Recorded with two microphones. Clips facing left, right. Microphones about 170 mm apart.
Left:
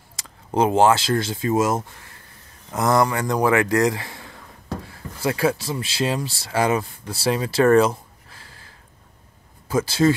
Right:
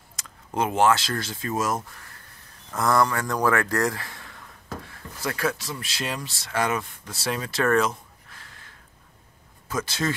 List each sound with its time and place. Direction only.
0.1 s speech: 30° left (ahead or behind)